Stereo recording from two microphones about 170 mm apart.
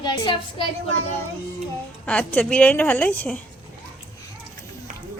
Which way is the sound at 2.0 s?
10° left (ahead or behind).